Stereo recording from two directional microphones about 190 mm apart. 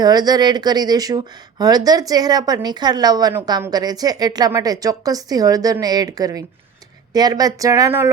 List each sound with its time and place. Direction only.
0.0 s speech: 20° right (ahead or behind)